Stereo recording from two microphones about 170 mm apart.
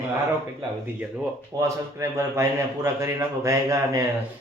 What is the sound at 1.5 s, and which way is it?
A man's voice, 20° right (ahead or behind).